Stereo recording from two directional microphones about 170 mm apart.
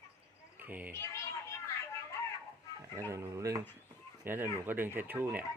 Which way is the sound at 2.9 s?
20° right (ahead or behind).